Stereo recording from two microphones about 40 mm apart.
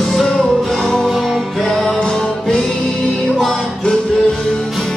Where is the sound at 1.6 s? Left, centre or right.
Centre.